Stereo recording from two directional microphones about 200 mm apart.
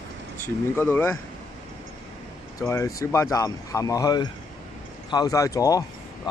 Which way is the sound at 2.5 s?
15° left (ahead or behind).